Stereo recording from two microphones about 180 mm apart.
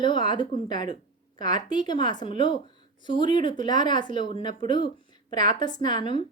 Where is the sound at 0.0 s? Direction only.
25° left (ahead or behind).